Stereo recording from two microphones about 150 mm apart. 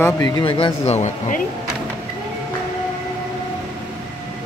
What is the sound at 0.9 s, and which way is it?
Speech, 50° left (ahead or behind).